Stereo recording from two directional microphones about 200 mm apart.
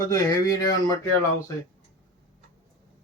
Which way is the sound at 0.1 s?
15° left (ahead or behind).